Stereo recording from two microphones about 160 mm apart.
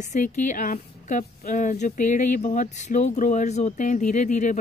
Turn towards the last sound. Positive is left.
turn(degrees=50)  # may be behind; listen again after turning